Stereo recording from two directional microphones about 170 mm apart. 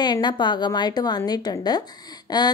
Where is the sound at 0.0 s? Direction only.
25° left (ahead or behind).